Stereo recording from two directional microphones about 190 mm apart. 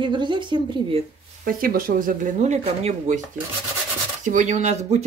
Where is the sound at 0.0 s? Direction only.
25° right (ahead or behind).